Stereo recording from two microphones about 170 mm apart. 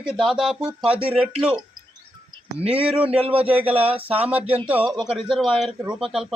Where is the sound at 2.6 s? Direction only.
35° right (ahead or behind).